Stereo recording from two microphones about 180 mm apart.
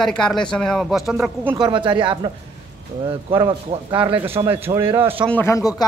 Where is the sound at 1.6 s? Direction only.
25° right (ahead or behind).